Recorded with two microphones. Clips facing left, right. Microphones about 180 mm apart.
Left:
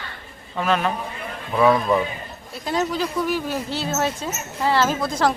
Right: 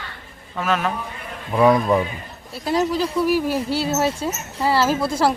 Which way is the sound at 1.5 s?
15° right (ahead or behind).